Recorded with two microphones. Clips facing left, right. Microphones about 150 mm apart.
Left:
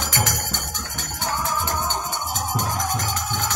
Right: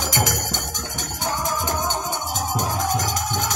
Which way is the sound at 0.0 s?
15° right (ahead or behind).